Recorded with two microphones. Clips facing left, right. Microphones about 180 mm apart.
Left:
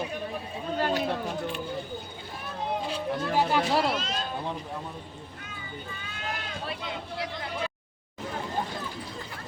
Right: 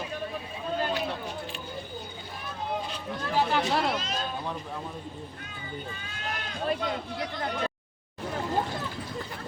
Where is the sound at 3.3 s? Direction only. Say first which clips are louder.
Even; 10° left (ahead or behind).